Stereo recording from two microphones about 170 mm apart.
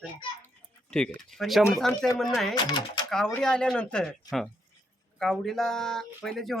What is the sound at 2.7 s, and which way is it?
Speech, 25° left (ahead or behind).